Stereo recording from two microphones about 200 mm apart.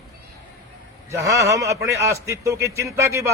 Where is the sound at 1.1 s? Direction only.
15° right (ahead or behind).